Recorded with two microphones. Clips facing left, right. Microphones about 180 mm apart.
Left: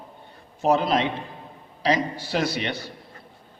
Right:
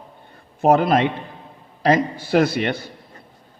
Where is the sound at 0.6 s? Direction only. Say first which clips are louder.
Right 5 dB; 55° right (ahead or behind).